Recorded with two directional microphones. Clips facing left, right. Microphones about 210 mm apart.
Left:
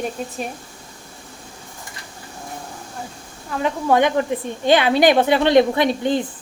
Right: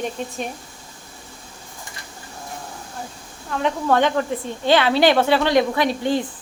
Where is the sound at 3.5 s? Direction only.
5° left (ahead or behind); by 6.2 s 20° left (ahead or behind).